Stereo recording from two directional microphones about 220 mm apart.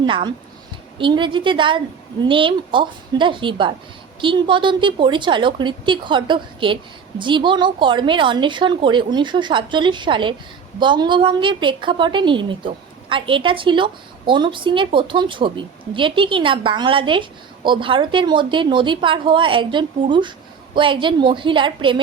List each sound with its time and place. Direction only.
0.0 s a woman's voice: 20° right (ahead or behind)